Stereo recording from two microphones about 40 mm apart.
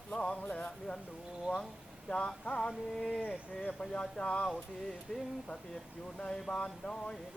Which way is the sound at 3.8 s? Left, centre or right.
Left.